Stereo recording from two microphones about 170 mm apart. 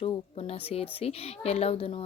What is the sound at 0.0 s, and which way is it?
Speech, 35° left (ahead or behind).